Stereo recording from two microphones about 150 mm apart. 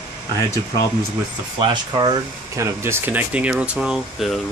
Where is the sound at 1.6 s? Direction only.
30° right (ahead or behind).